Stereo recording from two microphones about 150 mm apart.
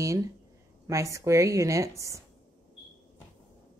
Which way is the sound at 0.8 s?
20° right (ahead or behind).